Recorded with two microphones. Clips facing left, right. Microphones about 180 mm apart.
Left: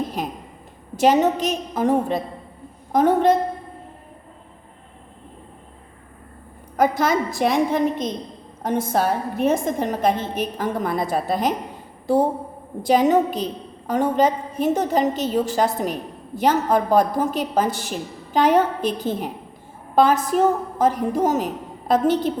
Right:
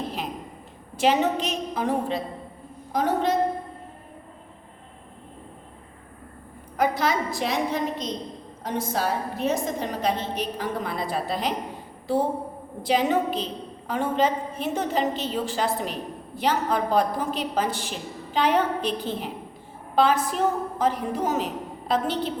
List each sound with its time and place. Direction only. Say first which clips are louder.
0.9 s a woman's voice: left 5 dB; 45° left (ahead or behind)
6.7 s a woman's voice: left 4 dB; 45° left (ahead or behind)
12.8 s a woman's voice: left 6 dB; 45° left (ahead or behind)